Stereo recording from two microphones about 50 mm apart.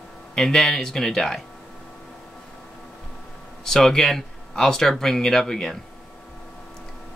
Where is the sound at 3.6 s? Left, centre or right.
Centre.